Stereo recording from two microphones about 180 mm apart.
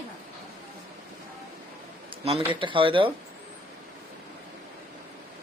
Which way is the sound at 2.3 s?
30° right (ahead or behind).